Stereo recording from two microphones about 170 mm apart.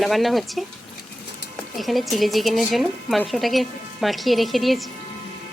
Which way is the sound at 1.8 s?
Centre (ahead or behind).